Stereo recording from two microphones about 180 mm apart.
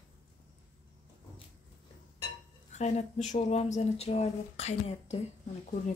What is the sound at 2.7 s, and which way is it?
Speech, 40° left (ahead or behind).